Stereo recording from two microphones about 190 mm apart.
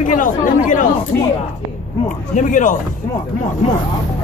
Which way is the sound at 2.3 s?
40° left (ahead or behind).